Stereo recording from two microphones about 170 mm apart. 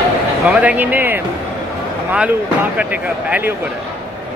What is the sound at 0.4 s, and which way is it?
Speech, 10° right (ahead or behind).